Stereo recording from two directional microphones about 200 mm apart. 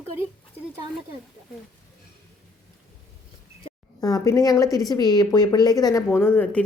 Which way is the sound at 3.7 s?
35° left (ahead or behind).